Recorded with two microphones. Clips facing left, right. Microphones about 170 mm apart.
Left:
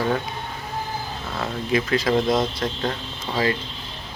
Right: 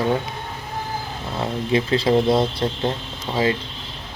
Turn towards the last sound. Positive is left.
turn(degrees=-20)  # may be behind; listen again after turning